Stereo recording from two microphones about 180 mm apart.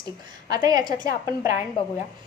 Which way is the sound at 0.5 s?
20° right (ahead or behind).